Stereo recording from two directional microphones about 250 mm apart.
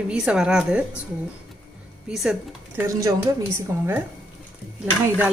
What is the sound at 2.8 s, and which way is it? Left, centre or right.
Speech, centre.